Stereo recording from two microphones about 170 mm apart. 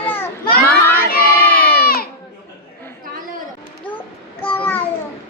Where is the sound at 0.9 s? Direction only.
60° left (ahead or behind).